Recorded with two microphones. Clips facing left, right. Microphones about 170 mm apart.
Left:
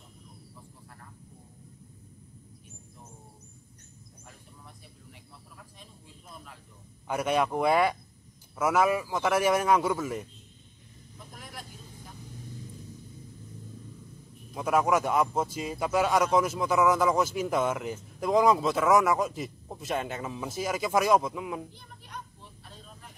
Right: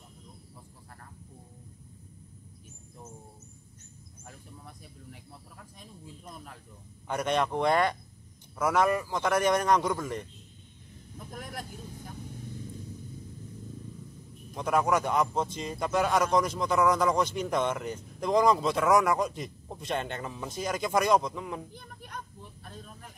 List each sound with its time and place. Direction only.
7.1 s speech: 5° left (ahead or behind)
14.5 s speech: 5° left (ahead or behind)
21.7 s children playing: 50° right (ahead or behind)